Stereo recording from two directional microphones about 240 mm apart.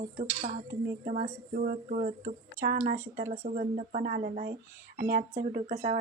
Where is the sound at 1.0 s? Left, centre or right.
Right.